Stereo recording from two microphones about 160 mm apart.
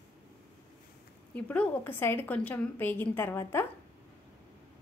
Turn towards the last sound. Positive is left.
turn(degrees=15)  # may be behind; listen again after turning